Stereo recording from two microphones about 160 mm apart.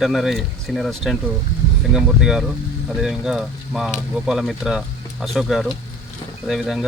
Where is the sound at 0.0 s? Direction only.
Centre (ahead or behind).